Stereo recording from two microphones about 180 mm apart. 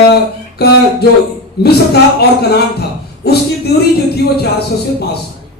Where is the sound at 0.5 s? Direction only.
65° left (ahead or behind).